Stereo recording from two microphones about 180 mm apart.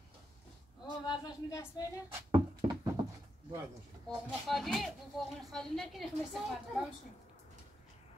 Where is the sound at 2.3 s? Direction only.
25° right (ahead or behind).